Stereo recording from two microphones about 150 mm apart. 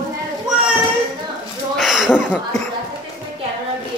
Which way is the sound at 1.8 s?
Centre (ahead or behind).